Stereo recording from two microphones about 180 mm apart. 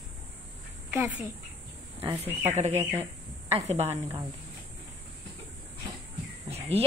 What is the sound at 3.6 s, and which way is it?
Speech, 35° right (ahead or behind).